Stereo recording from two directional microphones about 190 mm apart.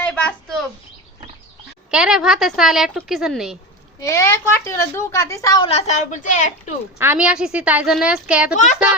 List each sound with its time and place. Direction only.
0.0 s a sound: 5° left (ahead or behind)
1.9 s a woman's voice: 5° right (ahead or behind)
4.0 s a woman's voice: 15° left (ahead or behind)
5.6 s a woman's voice: 35° left (ahead or behind)
7.0 s a woman's voice: 10° right (ahead or behind)